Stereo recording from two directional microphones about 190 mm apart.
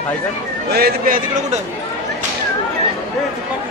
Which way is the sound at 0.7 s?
55° right (ahead or behind).